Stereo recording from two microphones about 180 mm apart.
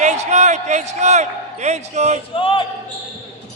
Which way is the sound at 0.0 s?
40° right (ahead or behind).